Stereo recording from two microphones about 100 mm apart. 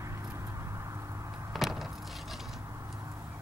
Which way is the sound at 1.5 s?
5° right (ahead or behind).